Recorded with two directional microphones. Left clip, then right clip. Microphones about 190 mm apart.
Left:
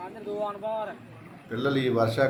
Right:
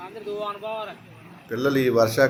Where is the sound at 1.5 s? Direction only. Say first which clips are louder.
Right 5 dB; 15° right (ahead or behind).